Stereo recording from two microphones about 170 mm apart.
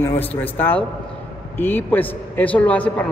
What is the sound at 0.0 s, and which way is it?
A man's voice, 15° left (ahead or behind).